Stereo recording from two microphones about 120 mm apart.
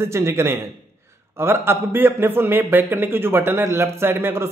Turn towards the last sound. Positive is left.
turn(degrees=-20)  # may be behind; listen again after turning